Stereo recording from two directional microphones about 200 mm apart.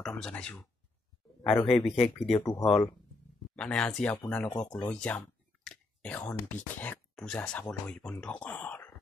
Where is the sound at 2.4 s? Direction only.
25° left (ahead or behind).